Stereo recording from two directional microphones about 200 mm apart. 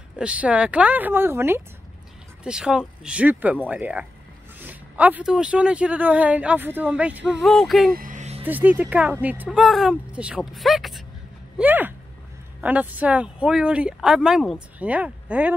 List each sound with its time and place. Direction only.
0.2 s speech: 5° right (ahead or behind)
7.9 s music: 40° right (ahead or behind)
8.5 s speech: 10° right (ahead or behind)